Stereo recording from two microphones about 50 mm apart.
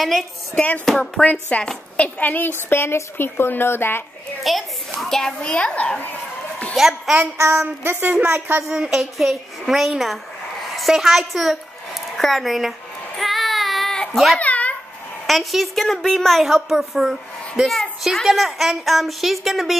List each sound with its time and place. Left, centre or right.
0.0 s a woman's voice: centre
1.2 s a child's voice: left
4.4 s a woman's voice: centre
5.4 s a child's voice: centre
6.7 s a woman's voice: centre
7.8 s a woman's voice: right
8.1 s speech: right
8.6 s a woman's voice: centre
13.1 s child singing: centre
14.1 s a woman's voice: centre
14.4 s a sound: left
15.2 s a woman's voice: centre